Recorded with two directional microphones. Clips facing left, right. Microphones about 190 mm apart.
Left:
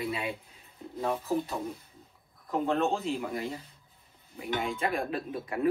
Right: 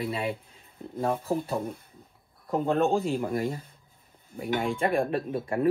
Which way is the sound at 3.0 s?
50° right (ahead or behind).